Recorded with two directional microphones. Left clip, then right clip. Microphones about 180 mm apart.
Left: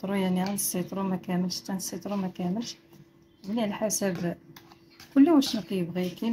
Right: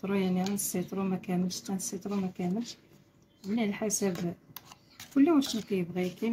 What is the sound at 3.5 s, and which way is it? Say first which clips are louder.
Speech: left 3 dB; 25° left (ahead or behind).